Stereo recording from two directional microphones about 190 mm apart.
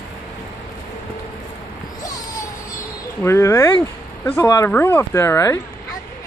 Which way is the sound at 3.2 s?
15° left (ahead or behind).